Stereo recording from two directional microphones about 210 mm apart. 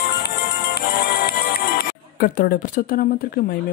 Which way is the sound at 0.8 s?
50° left (ahead or behind).